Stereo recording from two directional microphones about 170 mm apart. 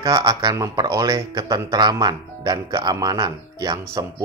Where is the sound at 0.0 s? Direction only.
20° right (ahead or behind).